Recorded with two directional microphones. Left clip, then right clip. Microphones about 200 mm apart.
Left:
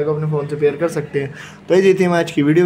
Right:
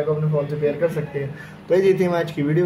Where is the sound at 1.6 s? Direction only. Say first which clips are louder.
Left 4 dB; 30° left (ahead or behind).